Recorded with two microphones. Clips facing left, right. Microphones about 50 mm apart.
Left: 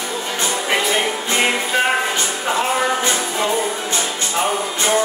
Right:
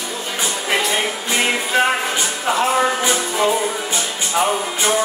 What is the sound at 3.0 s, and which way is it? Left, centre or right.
Music, centre.